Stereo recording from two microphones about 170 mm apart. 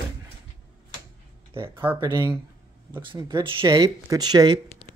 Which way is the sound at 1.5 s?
30° right (ahead or behind).